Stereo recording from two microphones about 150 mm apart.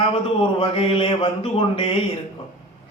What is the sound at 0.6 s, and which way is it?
A man's voice, 40° left (ahead or behind).